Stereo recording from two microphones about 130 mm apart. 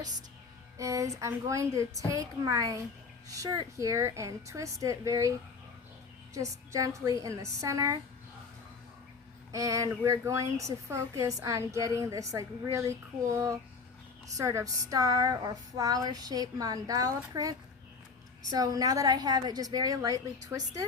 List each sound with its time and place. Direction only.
0.8 s speech: 25° right (ahead or behind)
6.3 s speech: 25° right (ahead or behind)
9.5 s speech: 25° right (ahead or behind)
18.5 s speech: 30° right (ahead or behind)